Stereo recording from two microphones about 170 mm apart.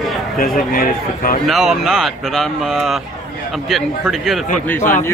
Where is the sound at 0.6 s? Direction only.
55° left (ahead or behind).